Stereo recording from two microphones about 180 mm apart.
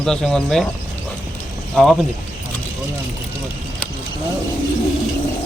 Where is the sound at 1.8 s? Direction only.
5° left (ahead or behind).